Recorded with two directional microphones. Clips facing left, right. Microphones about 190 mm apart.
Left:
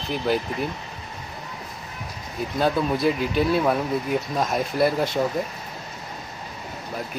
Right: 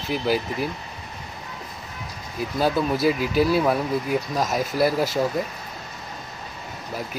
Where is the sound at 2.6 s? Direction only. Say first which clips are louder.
Even; 5° right (ahead or behind).